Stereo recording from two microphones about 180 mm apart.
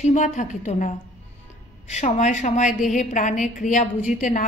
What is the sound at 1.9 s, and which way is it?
A woman's voice, 40° left (ahead or behind).